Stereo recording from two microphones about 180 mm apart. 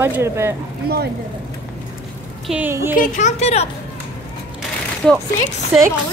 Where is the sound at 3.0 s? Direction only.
40° left (ahead or behind).